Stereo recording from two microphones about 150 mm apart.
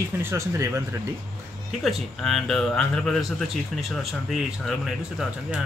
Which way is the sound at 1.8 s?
Centre (ahead or behind).